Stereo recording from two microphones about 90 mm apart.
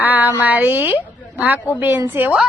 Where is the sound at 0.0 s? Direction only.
20° right (ahead or behind).